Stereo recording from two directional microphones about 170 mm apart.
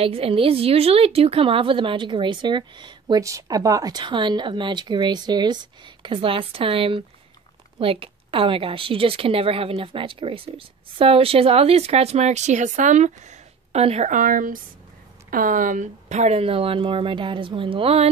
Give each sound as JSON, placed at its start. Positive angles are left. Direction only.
{"t": 0.0, "sound": "a woman's voice", "side_deg": -35}